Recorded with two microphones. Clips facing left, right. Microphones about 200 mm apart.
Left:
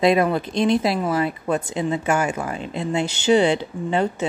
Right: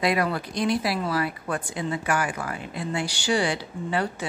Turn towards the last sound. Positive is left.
turn(degrees=25)  # may be behind; listen again after turning